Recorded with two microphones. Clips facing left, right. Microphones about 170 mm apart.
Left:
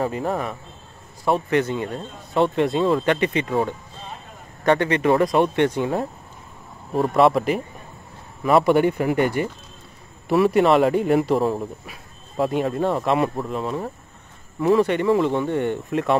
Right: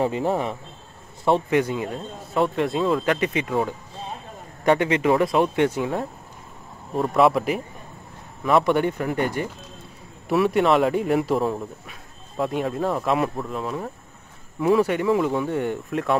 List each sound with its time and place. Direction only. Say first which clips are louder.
0.0 s a man's voice: right 1 dB; 25° right (ahead or behind)
1.5 s speech: even; 10° right (ahead or behind)